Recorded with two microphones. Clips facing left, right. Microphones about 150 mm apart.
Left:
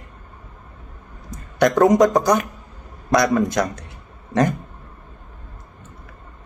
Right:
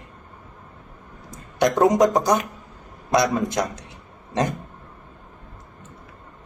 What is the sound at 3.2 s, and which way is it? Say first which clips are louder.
Speech: left 3 dB; 20° right (ahead or behind).